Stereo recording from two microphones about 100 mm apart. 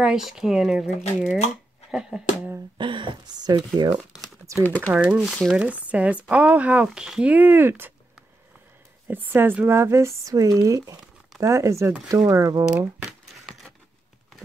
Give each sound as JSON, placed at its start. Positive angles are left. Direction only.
{"t": 0.0, "sound": "speech", "side_deg": -5}
{"t": 2.8, "sound": "speech", "side_deg": -55}
{"t": 4.6, "sound": "speech", "side_deg": 20}
{"t": 4.9, "sound": "speech", "side_deg": -10}
{"t": 9.0, "sound": "speech", "side_deg": -20}
{"t": 13.2, "sound": "a sound", "side_deg": 0}